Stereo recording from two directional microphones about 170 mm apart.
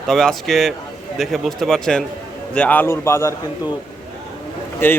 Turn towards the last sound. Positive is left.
turn(degrees=10)  # may be behind; listen again after turning